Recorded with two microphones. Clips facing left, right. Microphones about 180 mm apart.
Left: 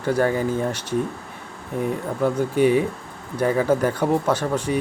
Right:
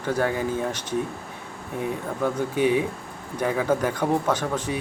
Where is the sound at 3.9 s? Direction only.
10° left (ahead or behind).